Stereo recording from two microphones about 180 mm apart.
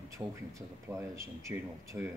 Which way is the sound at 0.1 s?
15° right (ahead or behind).